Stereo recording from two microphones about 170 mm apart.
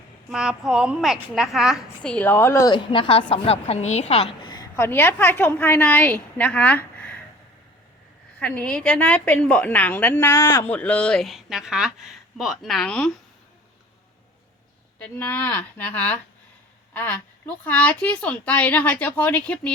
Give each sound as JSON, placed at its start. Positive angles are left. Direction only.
{"t": 0.3, "sound": "speech", "side_deg": -5}
{"t": 2.7, "sound": "a woman's voice", "side_deg": 30}
{"t": 4.8, "sound": "a woman's voice", "side_deg": 10}
{"t": 8.4, "sound": "a woman's voice", "side_deg": 10}
{"t": 10.7, "sound": "speech", "side_deg": 5}
{"t": 14.9, "sound": "a woman's voice", "side_deg": 10}